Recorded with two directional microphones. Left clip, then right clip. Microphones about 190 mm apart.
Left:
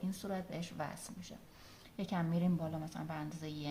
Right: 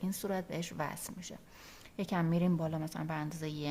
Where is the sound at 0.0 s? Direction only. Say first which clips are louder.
Right 5 dB; 55° right (ahead or behind).